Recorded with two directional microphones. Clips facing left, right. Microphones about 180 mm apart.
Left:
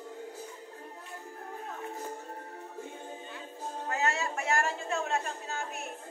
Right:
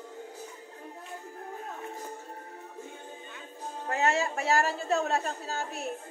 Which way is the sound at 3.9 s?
30° right (ahead or behind).